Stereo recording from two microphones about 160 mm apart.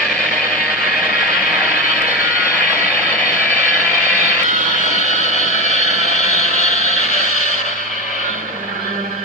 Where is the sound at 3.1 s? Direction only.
10° left (ahead or behind).